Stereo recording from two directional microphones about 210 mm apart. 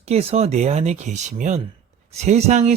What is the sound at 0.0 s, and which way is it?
Speech, 30° right (ahead or behind).